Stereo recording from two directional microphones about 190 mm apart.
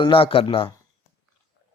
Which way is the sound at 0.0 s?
30° left (ahead or behind).